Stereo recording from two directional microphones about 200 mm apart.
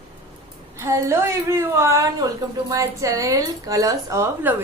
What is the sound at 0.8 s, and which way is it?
A woman's voice, 15° right (ahead or behind).